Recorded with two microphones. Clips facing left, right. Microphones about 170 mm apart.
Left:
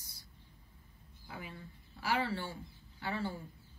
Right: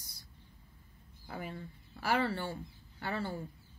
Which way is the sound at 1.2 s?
45° right (ahead or behind).